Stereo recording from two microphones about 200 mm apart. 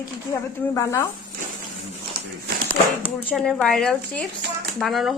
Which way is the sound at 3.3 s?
5° left (ahead or behind).